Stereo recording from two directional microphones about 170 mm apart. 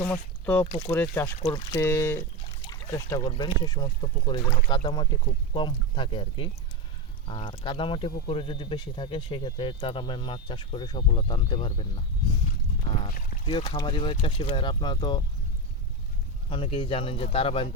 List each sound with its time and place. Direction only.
0.0 s speech: 10° left (ahead or behind); by 12.4 s 30° left (ahead or behind)
13.4 s speech: 30° left (ahead or behind)
16.5 s speech: 30° left (ahead or behind)